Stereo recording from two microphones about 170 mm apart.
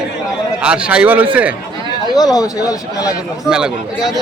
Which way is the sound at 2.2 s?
20° left (ahead or behind).